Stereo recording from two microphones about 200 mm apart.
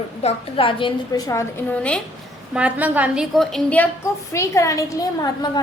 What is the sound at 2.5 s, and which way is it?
A woman's voice, 5° right (ahead or behind).